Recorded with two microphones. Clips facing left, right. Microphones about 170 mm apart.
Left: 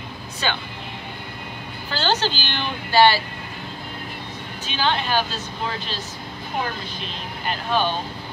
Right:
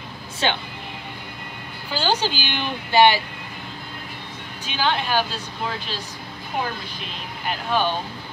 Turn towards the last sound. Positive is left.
turn(degrees=-10)  # may be behind; listen again after turning